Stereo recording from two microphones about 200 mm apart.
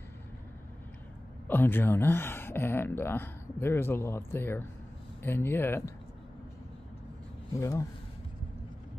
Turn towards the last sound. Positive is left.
turn(degrees=15)  # may be behind; listen again after turning